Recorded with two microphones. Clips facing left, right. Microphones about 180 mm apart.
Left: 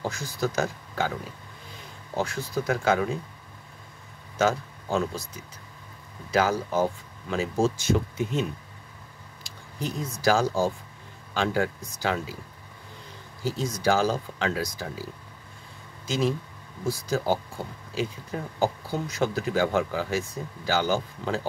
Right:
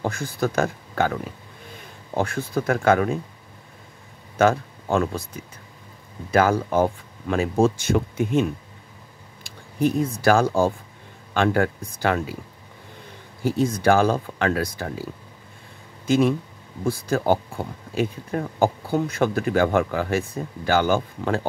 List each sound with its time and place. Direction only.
0.0 s speech: 55° right (ahead or behind)
2.1 s speech: 55° right (ahead or behind)
4.4 s speech: 60° right (ahead or behind)
13.4 s speech: 55° right (ahead or behind)
16.1 s speech: 55° right (ahead or behind)